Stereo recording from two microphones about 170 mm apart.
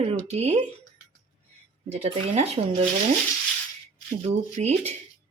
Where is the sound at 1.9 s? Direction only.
35° right (ahead or behind).